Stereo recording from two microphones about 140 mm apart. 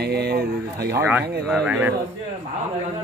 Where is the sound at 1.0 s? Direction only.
15° right (ahead or behind).